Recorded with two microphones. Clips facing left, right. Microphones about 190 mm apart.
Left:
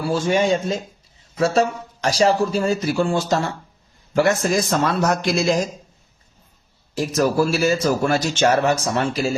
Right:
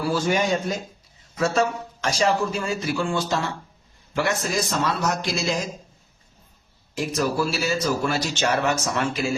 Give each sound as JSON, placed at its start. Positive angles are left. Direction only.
{"t": 0.0, "sound": "a man's voice", "side_deg": 25}
{"t": 6.9, "sound": "speech", "side_deg": 40}